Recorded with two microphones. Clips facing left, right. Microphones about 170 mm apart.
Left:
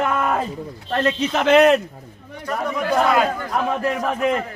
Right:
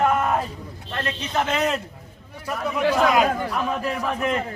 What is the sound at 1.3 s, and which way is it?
Speech, 75° left (ahead or behind).